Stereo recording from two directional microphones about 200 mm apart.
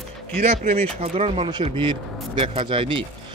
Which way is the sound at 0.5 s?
30° right (ahead or behind).